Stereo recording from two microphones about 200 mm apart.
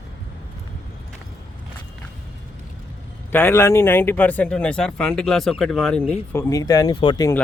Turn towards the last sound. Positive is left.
turn(degrees=20)  # may be behind; listen again after turning